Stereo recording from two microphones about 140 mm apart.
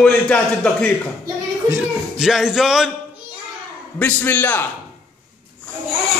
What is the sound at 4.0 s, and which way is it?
Speech, 10° left (ahead or behind).